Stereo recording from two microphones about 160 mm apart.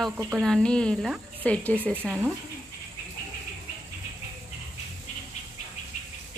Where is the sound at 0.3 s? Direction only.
5° left (ahead or behind).